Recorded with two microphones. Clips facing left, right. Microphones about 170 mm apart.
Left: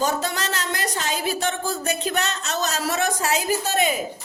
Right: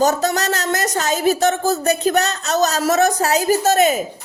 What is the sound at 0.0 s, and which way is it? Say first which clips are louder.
A woman's voice: right 7 dB; 40° right (ahead or behind).